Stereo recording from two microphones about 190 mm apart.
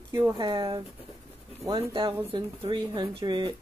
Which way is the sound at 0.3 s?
25° right (ahead or behind).